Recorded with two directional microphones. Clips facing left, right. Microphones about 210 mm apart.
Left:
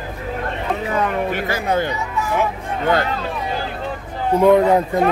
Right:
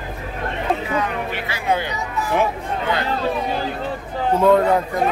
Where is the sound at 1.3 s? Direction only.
45° left (ahead or behind).